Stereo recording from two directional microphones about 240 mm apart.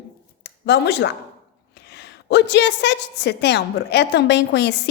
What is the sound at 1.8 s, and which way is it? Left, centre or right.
A woman's voice, left.